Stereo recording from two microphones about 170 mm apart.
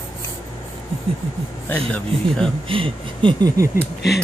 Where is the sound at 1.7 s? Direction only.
5° left (ahead or behind).